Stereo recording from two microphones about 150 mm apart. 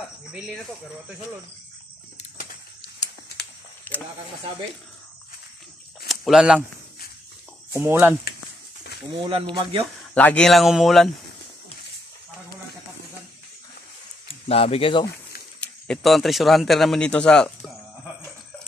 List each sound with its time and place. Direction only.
3.9 s speech: 10° left (ahead or behind)
6.0 s a sound: centre (ahead or behind)
7.7 s speech: 15° right (ahead or behind)
9.2 s speech: 35° right (ahead or behind)
10.1 s speech: 10° left (ahead or behind)
14.2 s speech: 40° left (ahead or behind)
15.6 s speech: 5° left (ahead or behind)